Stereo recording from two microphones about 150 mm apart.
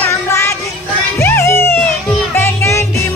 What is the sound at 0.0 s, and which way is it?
Music, 20° left (ahead or behind).